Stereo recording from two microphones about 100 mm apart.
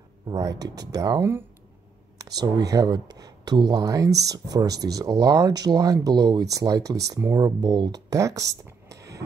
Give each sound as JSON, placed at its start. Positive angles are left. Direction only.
{"t": 0.3, "sound": "speech", "side_deg": -35}